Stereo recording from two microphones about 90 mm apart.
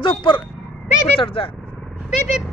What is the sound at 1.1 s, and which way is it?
Speech, 80° left.